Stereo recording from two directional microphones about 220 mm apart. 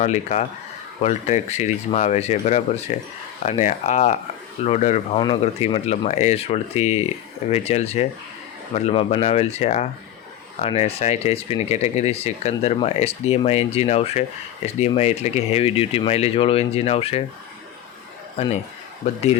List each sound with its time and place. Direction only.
0.0 s speech: 30° left (ahead or behind)
18.4 s speech: 30° left (ahead or behind)